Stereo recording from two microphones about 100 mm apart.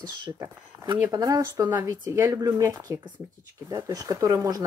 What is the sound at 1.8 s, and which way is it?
Speech, 30° right (ahead or behind).